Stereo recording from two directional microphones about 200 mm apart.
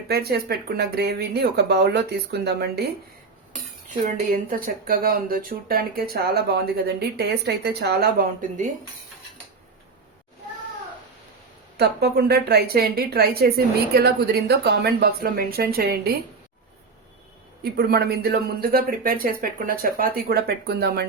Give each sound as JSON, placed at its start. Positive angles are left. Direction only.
{"t": 0.1, "sound": "speech", "side_deg": -50}
{"t": 4.0, "sound": "speech", "side_deg": -45}
{"t": 11.8, "sound": "speech", "side_deg": -55}
{"t": 17.6, "sound": "speech", "side_deg": -50}